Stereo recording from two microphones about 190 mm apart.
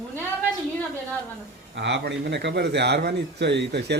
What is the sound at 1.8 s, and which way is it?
A man's voice, 70° right (ahead or behind).